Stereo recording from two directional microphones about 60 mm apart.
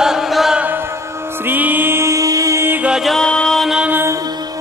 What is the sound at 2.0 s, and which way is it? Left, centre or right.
Music, right.